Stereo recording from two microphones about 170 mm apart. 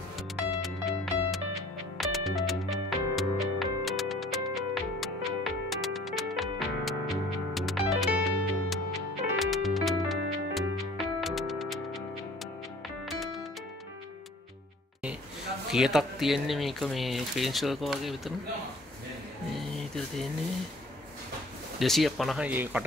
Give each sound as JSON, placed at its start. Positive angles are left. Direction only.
{"t": 0.4, "sound": "music", "side_deg": 0}
{"t": 13.0, "sound": "music", "side_deg": 0}
{"t": 15.7, "sound": "speech", "side_deg": 0}
{"t": 21.7, "sound": "speech", "side_deg": 0}
{"t": 22.5, "sound": "speech", "side_deg": -10}